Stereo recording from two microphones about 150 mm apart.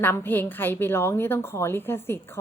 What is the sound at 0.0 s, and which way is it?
A woman's voice, 15° left (ahead or behind).